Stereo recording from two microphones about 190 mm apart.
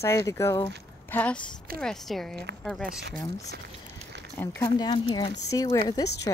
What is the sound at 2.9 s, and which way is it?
Speech, 60° right (ahead or behind).